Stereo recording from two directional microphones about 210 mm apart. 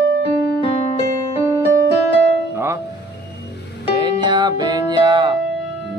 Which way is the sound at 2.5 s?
10° right (ahead or behind).